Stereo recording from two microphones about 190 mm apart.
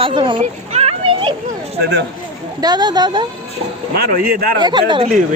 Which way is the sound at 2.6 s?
20° right (ahead or behind).